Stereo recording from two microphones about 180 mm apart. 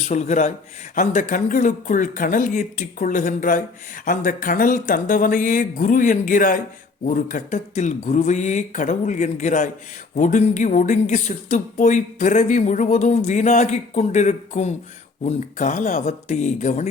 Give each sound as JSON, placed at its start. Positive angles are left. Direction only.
{"t": 0.1, "sound": "speech", "side_deg": 40}